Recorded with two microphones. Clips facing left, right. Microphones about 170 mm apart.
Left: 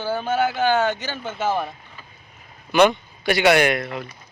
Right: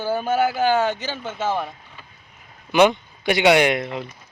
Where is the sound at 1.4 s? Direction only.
10° left (ahead or behind).